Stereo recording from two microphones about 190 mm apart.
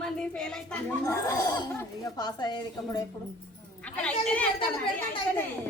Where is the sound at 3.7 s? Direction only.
5° left (ahead or behind).